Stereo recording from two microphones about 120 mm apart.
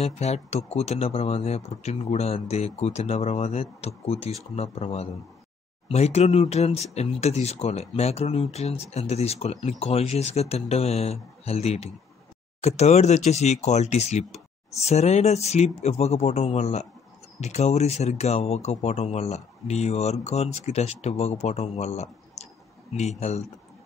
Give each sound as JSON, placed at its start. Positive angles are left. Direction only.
{"t": 0.0, "sound": "speech", "side_deg": 65}